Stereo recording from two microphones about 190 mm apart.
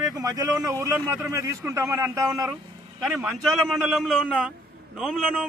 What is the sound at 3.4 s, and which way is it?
Speech, centre (ahead or behind).